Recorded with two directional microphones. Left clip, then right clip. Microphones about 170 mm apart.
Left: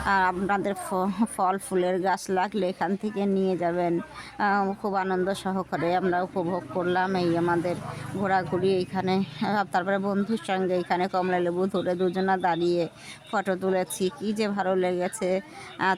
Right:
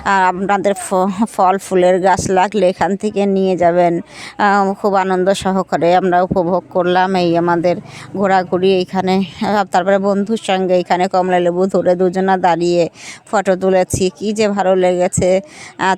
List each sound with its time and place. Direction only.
0.0 s speech: 45° right (ahead or behind)